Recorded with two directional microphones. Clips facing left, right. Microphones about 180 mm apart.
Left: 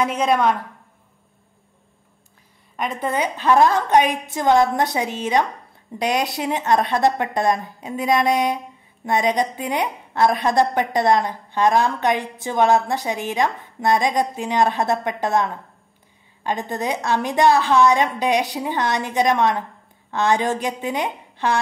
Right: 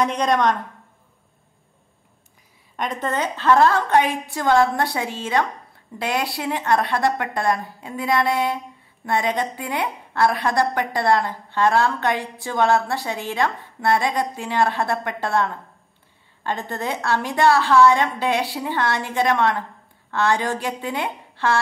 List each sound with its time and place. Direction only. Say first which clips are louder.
0.0 s a woman's voice: left 1 dB; 5° left (ahead or behind)
2.7 s a woman's voice: left 1 dB; 5° left (ahead or behind)